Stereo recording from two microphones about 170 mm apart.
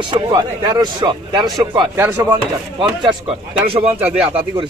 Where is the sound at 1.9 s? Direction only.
15° right (ahead or behind).